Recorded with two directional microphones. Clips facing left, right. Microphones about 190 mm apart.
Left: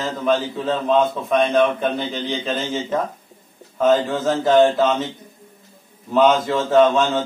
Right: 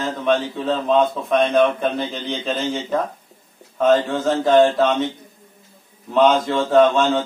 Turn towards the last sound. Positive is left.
turn(degrees=0)  # may be behind; listen again after turning